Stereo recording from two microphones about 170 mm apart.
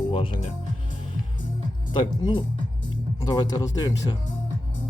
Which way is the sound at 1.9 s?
30° left (ahead or behind).